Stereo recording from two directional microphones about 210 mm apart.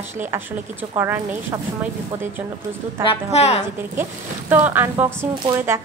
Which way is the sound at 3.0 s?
30° left (ahead or behind).